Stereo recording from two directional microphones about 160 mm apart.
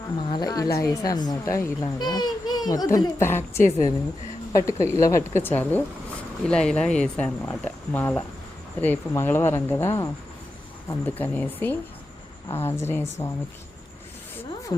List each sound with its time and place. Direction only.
0.3 s speech: 25° left (ahead or behind)